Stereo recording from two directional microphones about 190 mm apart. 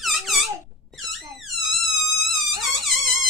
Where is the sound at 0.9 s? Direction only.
Centre (ahead or behind).